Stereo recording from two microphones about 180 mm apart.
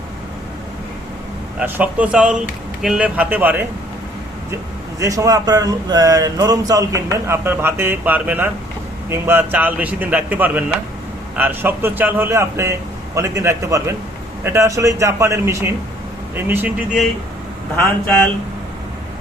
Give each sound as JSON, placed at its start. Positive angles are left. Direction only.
{"t": 1.5, "sound": "a man's voice", "side_deg": -10}
{"t": 4.9, "sound": "a man's voice", "side_deg": -20}